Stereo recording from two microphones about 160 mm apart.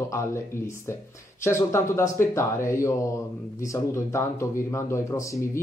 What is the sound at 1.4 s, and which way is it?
Speech, 15° left (ahead or behind).